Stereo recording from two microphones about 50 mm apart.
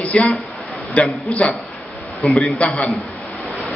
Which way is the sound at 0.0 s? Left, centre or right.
Left.